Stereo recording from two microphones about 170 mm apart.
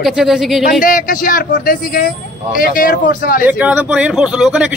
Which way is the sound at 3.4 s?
10° right (ahead or behind).